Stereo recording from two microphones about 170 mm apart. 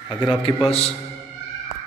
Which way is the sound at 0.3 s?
30° left (ahead or behind).